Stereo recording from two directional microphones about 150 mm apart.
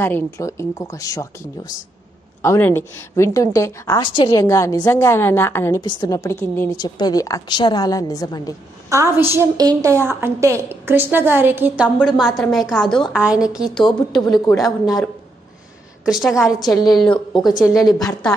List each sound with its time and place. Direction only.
0.0 s a woman's voice: 15° left (ahead or behind)
5.8 s a woman's voice: 30° left (ahead or behind)
6.8 s a woman's voice: 25° left (ahead or behind)
8.8 s a woman's voice: 20° right (ahead or behind); by 15.0 s centre (ahead or behind)
16.1 s a woman's voice: centre (ahead or behind)